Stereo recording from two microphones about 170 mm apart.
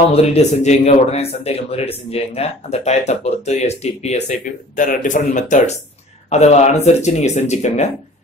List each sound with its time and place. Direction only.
0.1 s speech: 40° left (ahead or behind)